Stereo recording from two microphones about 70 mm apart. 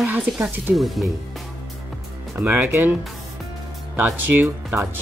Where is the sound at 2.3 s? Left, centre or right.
Right.